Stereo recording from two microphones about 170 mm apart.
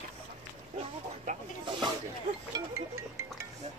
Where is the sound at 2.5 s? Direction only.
15° right (ahead or behind).